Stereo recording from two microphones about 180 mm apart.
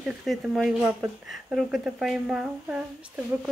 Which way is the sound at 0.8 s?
10° right (ahead or behind).